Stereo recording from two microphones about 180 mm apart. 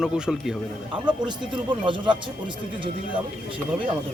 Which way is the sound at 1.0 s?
25° right (ahead or behind).